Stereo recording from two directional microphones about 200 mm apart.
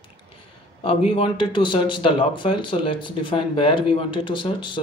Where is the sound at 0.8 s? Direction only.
25° left (ahead or behind).